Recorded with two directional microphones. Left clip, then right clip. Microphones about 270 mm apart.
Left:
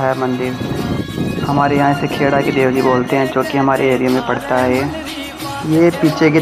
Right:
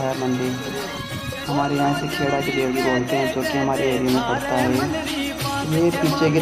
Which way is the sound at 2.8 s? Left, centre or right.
Centre.